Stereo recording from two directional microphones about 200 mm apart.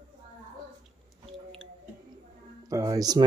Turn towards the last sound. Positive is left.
turn(degrees=-20)  # may be behind; listen again after turning